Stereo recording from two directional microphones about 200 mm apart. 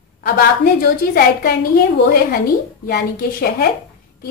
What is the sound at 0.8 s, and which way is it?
A woman's voice, 50° left (ahead or behind).